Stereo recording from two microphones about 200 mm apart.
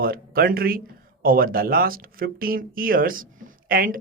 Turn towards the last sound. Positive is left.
turn(degrees=-45)  # may be behind; listen again after turning